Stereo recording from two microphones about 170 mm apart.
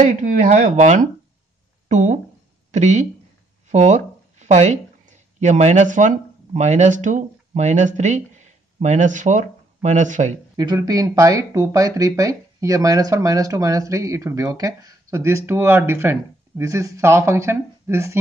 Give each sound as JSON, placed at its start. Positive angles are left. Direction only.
{"t": 0.0, "sound": "speech", "side_deg": -50}
{"t": 10.5, "sound": "speech", "side_deg": -25}